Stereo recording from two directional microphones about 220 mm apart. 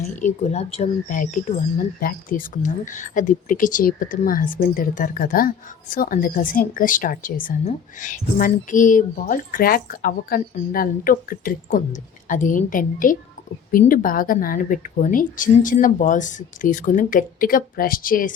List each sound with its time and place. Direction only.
0.0 s speech: 30° left (ahead or behind)